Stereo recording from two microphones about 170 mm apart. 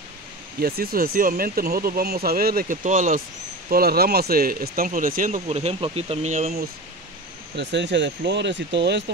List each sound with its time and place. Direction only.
0.6 s speech: 65° right (ahead or behind)
3.7 s speech: 65° right (ahead or behind); by 6.6 s 40° right (ahead or behind)
7.5 s speech: 90° right